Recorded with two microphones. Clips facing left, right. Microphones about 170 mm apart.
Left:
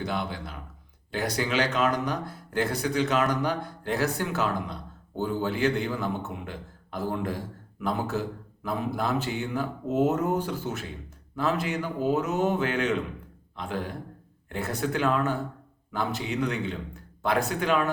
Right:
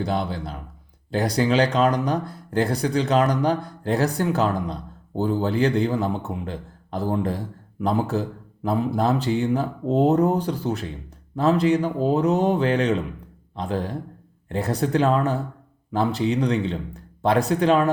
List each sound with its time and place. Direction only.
0.0 s speech: 35° right (ahead or behind)